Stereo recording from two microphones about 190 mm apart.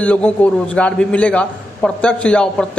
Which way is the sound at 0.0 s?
5° left (ahead or behind).